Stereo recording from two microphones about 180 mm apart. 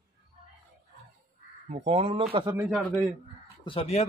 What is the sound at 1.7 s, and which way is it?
Speech, 35° right (ahead or behind).